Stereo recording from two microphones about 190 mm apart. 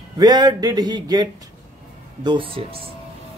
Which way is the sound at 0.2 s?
20° right (ahead or behind).